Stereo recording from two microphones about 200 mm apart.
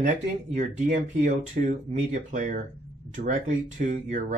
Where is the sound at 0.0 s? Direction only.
35° right (ahead or behind).